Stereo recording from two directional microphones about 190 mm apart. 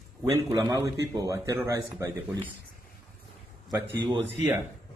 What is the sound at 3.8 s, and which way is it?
Speech, 25° right (ahead or behind).